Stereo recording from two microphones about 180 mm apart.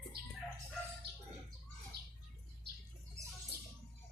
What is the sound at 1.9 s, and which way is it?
Bird, 65° right (ahead or behind).